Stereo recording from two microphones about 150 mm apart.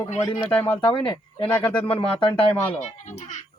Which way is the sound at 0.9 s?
35° left (ahead or behind).